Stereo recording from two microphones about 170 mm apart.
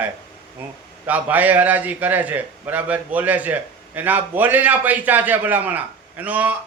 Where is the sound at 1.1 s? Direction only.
10° right (ahead or behind).